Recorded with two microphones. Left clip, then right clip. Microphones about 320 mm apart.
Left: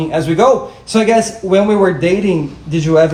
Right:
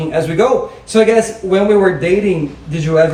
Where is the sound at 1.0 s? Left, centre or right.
Centre.